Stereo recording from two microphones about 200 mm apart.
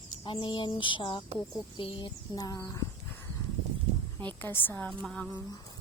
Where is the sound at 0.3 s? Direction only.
25° left (ahead or behind).